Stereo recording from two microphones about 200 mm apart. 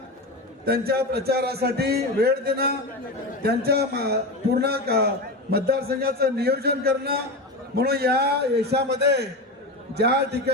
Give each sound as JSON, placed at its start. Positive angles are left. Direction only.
{"t": 0.6, "sound": "a man's voice", "side_deg": -50}